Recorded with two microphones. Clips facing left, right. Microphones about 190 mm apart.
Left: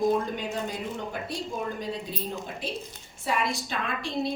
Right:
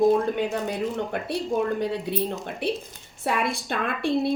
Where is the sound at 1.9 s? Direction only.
65° right (ahead or behind).